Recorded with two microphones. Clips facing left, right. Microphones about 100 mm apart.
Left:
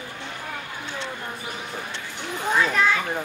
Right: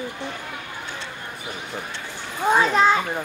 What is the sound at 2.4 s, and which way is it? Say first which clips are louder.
Children playing: right 4 dB; 20° right (ahead or behind).